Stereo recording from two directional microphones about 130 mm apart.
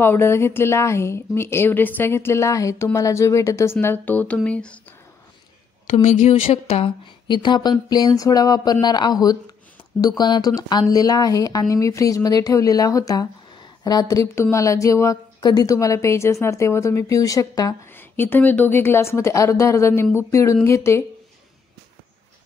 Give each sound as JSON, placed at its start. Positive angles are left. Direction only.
{"t": 0.0, "sound": "speech", "side_deg": 20}
{"t": 5.9, "sound": "speech", "side_deg": 65}
{"t": 6.4, "sound": "speech", "side_deg": 50}
{"t": 7.2, "sound": "speech", "side_deg": 35}
{"t": 17.9, "sound": "speech", "side_deg": 15}